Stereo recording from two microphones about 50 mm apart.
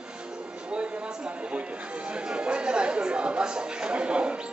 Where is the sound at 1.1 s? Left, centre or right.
Centre.